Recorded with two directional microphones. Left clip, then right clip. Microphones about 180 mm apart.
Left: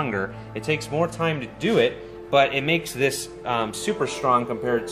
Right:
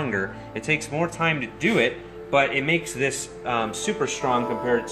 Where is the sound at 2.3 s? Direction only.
55° left (ahead or behind).